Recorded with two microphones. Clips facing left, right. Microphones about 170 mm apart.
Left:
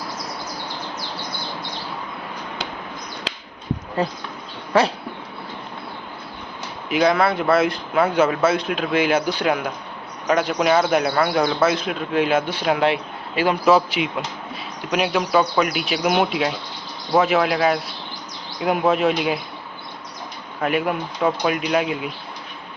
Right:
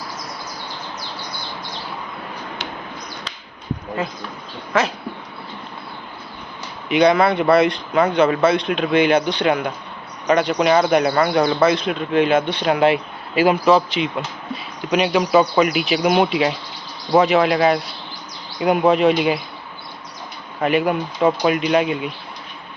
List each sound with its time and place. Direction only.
4.0 s speech: 35° left (ahead or behind)
6.8 s speech: centre (ahead or behind)
13.7 s speech: 5° left (ahead or behind)
20.6 s speech: centre (ahead or behind)